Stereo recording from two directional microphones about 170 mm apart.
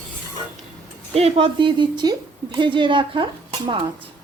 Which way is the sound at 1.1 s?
35° right (ahead or behind).